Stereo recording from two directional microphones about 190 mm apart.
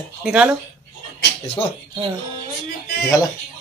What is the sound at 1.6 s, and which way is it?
Speech, 30° left (ahead or behind).